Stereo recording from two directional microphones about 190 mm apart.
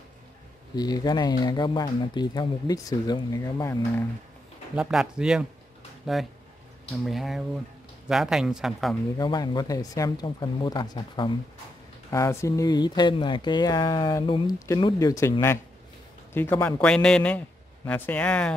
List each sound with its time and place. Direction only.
0.7 s speech: 20° left (ahead or behind)
4.7 s speech: 5° right (ahead or behind)
9.2 s speech: 20° left (ahead or behind)
16.3 s a man's voice: 10° left (ahead or behind)